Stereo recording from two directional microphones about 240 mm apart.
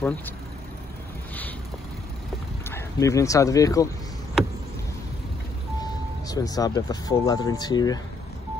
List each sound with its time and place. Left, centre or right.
0.0 s speech: centre
2.7 s speech: centre
5.8 s speech: centre